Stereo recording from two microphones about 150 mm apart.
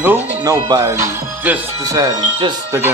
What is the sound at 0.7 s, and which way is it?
Music, 20° right (ahead or behind).